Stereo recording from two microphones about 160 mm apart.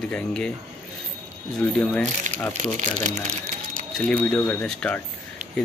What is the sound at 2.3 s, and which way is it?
Speech, 55° right (ahead or behind).